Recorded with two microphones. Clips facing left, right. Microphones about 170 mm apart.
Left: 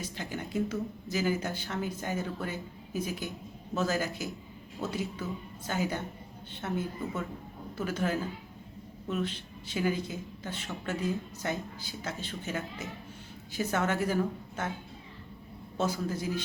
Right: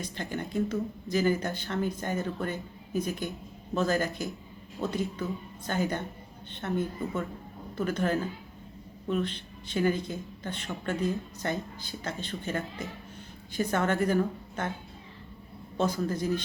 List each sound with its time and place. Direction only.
0.0 s speech: 10° left (ahead or behind)
15.8 s speech: 10° left (ahead or behind)